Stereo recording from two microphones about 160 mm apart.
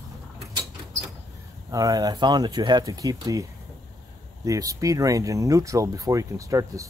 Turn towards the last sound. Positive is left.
turn(degrees=-20)  # may be behind; listen again after turning